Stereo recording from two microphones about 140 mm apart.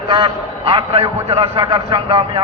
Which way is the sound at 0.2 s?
45° right (ahead or behind).